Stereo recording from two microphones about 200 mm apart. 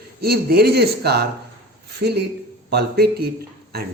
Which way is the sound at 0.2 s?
50° right (ahead or behind).